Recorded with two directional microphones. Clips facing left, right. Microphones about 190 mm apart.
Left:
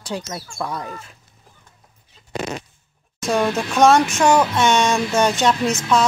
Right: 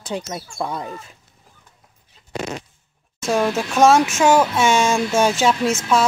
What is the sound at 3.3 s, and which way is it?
Speech, 5° right (ahead or behind).